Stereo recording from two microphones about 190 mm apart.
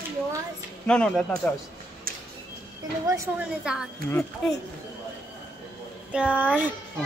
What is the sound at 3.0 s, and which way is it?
Speech, 15° right (ahead or behind).